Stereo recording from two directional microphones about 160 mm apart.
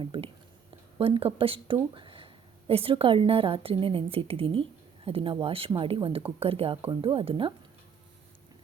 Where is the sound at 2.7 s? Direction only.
35° right (ahead or behind).